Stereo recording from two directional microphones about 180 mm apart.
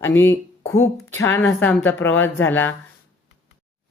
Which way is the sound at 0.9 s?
15° left (ahead or behind).